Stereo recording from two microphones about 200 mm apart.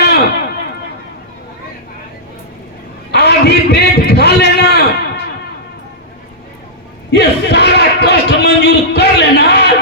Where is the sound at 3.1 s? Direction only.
55° left (ahead or behind).